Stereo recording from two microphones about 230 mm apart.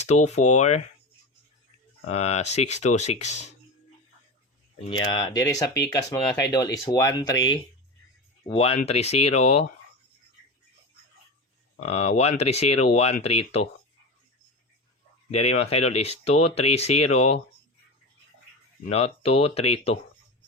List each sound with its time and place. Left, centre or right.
0.0 s speech: left
2.1 s speech: left
5.1 s speech: centre
8.4 s speech: left
11.8 s speech: left
15.3 s speech: left
18.9 s speech: left